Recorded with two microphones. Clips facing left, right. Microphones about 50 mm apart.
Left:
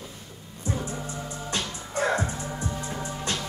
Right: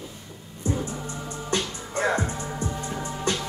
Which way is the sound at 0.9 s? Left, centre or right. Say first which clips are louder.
Right 1 dB; right.